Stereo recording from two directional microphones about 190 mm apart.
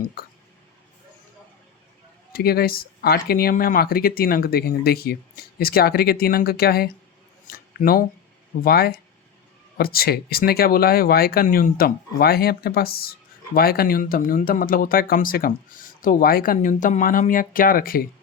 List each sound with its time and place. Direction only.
2.3 s speech: 55° left (ahead or behind)